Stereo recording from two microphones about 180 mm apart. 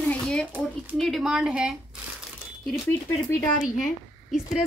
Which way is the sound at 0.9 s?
Centre (ahead or behind).